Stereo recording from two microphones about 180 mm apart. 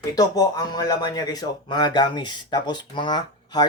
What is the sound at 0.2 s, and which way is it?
Speech, 20° left (ahead or behind).